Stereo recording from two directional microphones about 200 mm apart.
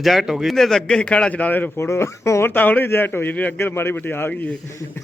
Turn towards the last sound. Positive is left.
turn(degrees=10)  # may be behind; listen again after turning